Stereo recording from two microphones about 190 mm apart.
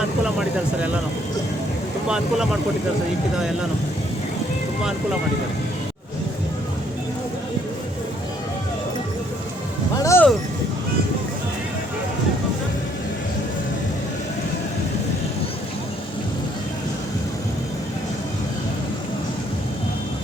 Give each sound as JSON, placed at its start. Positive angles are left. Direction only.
{"t": 2.0, "sound": "speech", "side_deg": -5}
{"t": 9.9, "sound": "music", "side_deg": 15}